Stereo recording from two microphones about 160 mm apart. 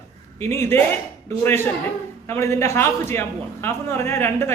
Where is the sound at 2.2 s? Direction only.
15° left (ahead or behind).